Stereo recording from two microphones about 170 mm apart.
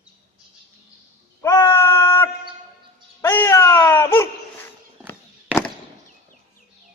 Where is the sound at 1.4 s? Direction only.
15° left (ahead or behind).